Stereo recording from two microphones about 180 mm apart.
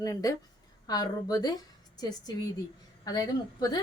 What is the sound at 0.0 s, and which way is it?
A woman's voice, 20° left (ahead or behind).